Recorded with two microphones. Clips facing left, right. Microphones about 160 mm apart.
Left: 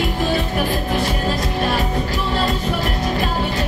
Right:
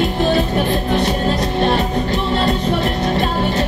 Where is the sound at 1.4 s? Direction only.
25° right (ahead or behind).